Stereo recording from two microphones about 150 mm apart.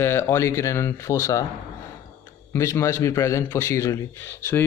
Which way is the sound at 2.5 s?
20° left (ahead or behind).